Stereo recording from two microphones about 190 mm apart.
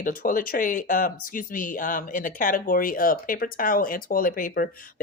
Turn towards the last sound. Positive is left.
turn(degrees=45)  # may be behind; listen again after turning